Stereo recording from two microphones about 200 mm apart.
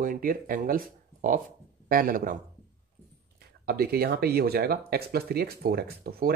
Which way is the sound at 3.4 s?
50° right (ahead or behind).